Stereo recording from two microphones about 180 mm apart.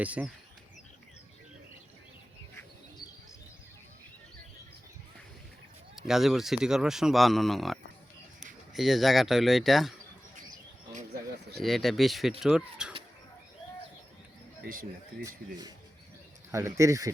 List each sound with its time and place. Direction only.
0.0 s speech: 10° right (ahead or behind)
6.0 s speech: centre (ahead or behind)
10.9 s a sound: 55° right (ahead or behind)
11.6 s speech: centre (ahead or behind)
14.6 s speech: 50° right (ahead or behind)
16.5 s speech: 15° right (ahead or behind)